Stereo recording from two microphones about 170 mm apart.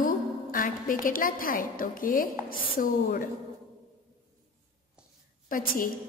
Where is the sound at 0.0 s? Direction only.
55° left (ahead or behind).